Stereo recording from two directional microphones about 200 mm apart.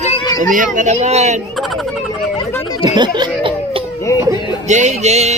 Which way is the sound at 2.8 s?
20° right (ahead or behind).